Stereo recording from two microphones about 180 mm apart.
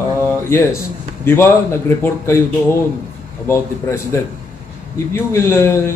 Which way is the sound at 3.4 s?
15° left (ahead or behind).